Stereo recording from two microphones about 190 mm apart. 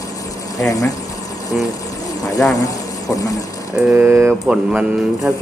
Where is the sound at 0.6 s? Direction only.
20° left (ahead or behind).